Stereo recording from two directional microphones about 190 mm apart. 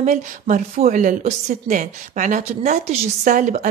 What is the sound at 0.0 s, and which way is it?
A woman's voice, 40° right (ahead or behind).